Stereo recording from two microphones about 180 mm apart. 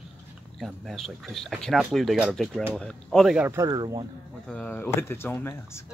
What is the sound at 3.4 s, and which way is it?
Speech, 15° right (ahead or behind).